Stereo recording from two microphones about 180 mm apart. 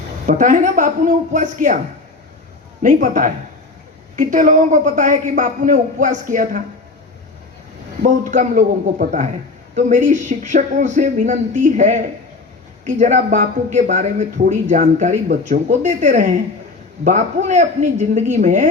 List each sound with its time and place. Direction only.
0.3 s speech: 45° right (ahead or behind)
2.8 s speech: 45° right (ahead or behind)
8.0 s speech: 45° right (ahead or behind)